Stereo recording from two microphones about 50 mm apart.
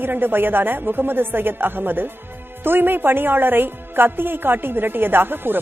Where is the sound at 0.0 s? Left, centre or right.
Right.